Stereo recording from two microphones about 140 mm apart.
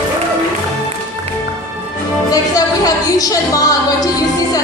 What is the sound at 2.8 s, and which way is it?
A woman's voice, 25° left (ahead or behind).